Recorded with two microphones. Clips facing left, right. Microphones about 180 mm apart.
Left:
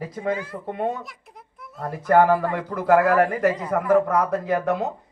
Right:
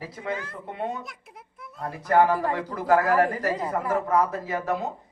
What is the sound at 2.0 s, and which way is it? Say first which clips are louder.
A man's voice: left 3 dB; 50° left (ahead or behind).